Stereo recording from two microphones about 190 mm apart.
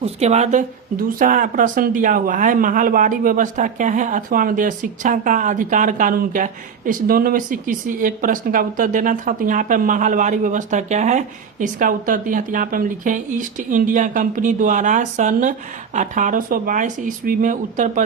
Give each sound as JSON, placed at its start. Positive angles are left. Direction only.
{"t": 0.0, "sound": "speech", "side_deg": -35}